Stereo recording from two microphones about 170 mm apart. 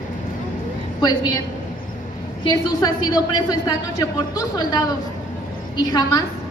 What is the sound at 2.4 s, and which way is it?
A woman's voice, 25° left (ahead or behind).